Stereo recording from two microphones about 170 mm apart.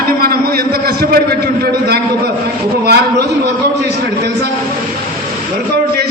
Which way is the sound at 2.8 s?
70° right (ahead or behind).